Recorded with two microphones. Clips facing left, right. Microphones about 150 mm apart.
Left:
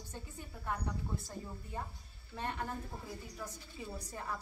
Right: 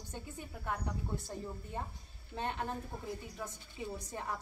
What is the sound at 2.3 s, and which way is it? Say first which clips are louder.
Speech: right 2 dB; 25° right (ahead or behind).